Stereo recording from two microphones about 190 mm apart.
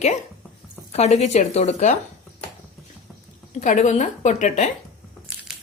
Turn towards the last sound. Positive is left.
turn(degrees=40)  # may be behind; listen again after turning